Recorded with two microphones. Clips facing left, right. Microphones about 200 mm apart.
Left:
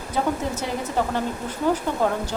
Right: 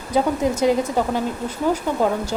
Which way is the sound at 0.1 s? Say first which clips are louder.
Right 5 dB; 15° right (ahead or behind).